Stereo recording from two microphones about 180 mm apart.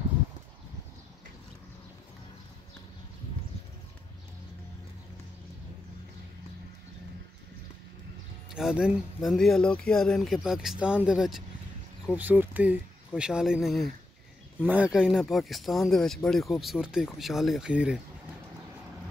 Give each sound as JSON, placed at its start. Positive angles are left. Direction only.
{"t": 8.5, "sound": "speech", "side_deg": -5}